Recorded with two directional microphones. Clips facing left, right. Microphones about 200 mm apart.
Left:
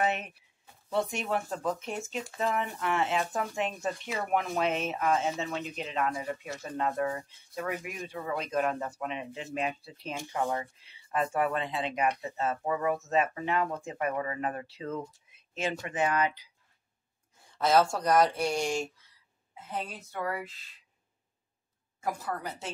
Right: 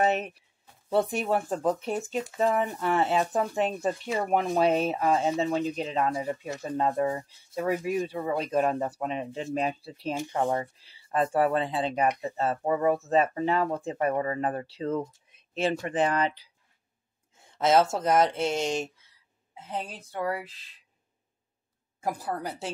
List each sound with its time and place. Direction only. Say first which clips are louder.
0.0 s speech: right 5 dB; 35° right (ahead or behind); by 18.9 s 20° right (ahead or behind)
20.1 s speech: right 5 dB; 30° right (ahead or behind)
22.0 s speech: right 3 dB; 35° right (ahead or behind)